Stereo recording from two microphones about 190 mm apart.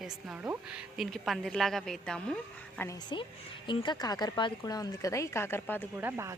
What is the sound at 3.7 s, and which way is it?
Speech, 25° left (ahead or behind).